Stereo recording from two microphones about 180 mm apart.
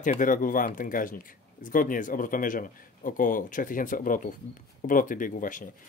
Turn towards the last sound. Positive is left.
turn(degrees=50)  # may be behind; listen again after turning